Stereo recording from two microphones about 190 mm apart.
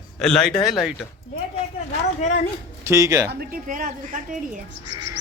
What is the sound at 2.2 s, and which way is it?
Speech, 40° left (ahead or behind).